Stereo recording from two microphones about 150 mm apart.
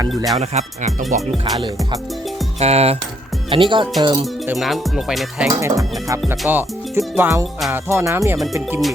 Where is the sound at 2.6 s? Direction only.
45° right (ahead or behind).